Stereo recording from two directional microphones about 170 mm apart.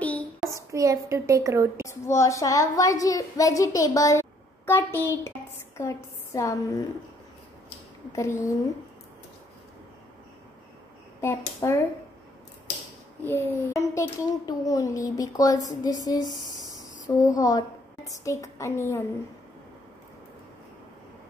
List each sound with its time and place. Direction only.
0.0 s child singing: 10° left (ahead or behind)
0.6 s a woman's voice: 20° right (ahead or behind)
1.9 s a child's voice: 15° left (ahead or behind)
8.1 s a child's voice: 15° left (ahead or behind)
11.1 s a child's voice: 15° left (ahead or behind)
13.2 s a child's voice: 15° left (ahead or behind)
17.4 s a woman's voice: 20° left (ahead or behind)